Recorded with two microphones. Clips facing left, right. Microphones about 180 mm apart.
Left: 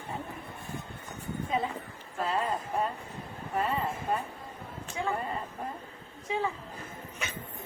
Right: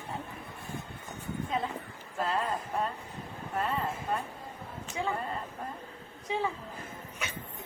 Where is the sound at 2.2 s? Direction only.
Centre (ahead or behind).